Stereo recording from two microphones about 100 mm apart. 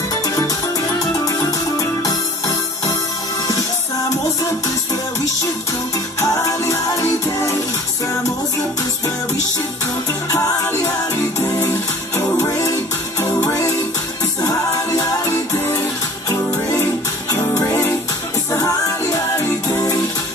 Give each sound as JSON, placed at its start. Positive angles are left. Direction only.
{"t": 0.1, "sound": "music", "side_deg": 35}
{"t": 6.2, "sound": "music", "side_deg": 30}
{"t": 13.4, "sound": "music", "side_deg": 35}
{"t": 17.3, "sound": "music", "side_deg": 35}